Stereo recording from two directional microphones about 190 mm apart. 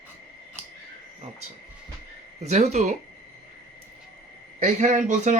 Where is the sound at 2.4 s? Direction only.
35° right (ahead or behind).